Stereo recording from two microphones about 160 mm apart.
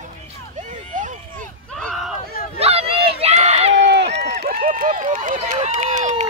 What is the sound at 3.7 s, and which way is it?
Run, 90° right.